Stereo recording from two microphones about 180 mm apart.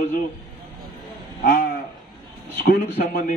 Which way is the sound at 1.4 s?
50° left (ahead or behind).